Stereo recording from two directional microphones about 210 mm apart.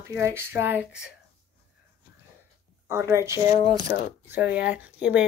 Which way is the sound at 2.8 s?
10° right (ahead or behind).